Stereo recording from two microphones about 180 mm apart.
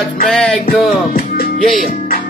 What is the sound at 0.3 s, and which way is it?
Music, 5° left (ahead or behind).